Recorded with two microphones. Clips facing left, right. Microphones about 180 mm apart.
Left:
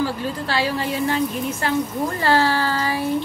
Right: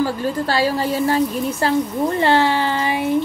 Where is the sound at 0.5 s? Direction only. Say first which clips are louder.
Right 3 dB; 40° right (ahead or behind); by 3.0 s 20° right (ahead or behind).